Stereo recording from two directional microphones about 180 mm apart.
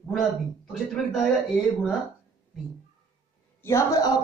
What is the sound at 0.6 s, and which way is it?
Speech, centre (ahead or behind).